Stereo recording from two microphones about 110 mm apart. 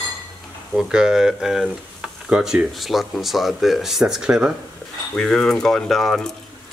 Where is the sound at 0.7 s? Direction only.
5° right (ahead or behind).